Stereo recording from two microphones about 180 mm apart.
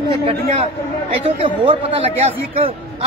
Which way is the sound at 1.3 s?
30° right (ahead or behind).